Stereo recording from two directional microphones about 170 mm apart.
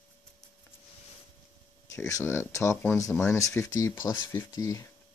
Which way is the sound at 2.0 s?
15° left (ahead or behind).